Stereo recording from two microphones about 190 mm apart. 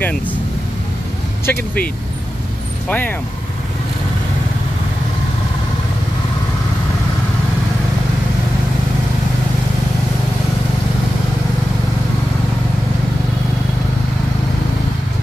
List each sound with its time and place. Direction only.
1.4 s speech: 10° left (ahead or behind)
2.9 s speech: 10° left (ahead or behind)